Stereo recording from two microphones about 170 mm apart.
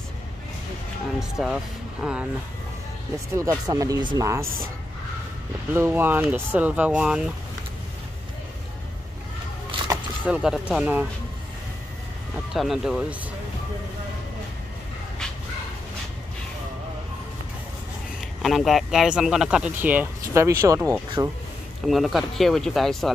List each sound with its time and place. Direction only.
1.4 s speech: 5° right (ahead or behind)
3.3 s speech: 20° right (ahead or behind)
5.7 s speech: 15° right (ahead or behind)
9.7 s a sound: 30° right (ahead or behind)
10.2 s speech: 5° right (ahead or behind)
12.5 s speech: centre (ahead or behind)
18.4 s speech: centre (ahead or behind); by 21.3 s 20° right (ahead or behind)
21.8 s speech: centre (ahead or behind)